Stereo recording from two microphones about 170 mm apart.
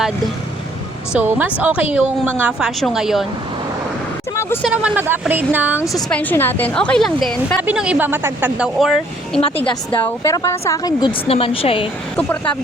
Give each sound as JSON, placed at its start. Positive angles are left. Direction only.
{"t": 1.1, "sound": "a woman's voice", "side_deg": -10}
{"t": 4.4, "sound": "a sound", "side_deg": 15}
{"t": 4.6, "sound": "a woman's voice", "side_deg": -10}
{"t": 5.9, "sound": "a woman's voice", "side_deg": 5}
{"t": 10.0, "sound": "a woman's voice", "side_deg": 15}
{"t": 11.3, "sound": "speech", "side_deg": 35}
{"t": 12.1, "sound": "a woman's voice", "side_deg": 10}